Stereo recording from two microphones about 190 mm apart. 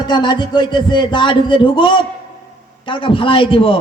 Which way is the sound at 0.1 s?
25° left (ahead or behind).